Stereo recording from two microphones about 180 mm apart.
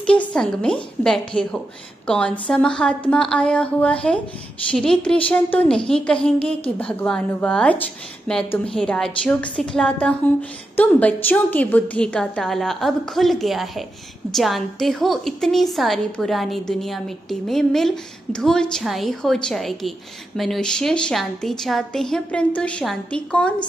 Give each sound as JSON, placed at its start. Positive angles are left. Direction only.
{"t": 0.3, "sound": "a woman's voice", "side_deg": 5}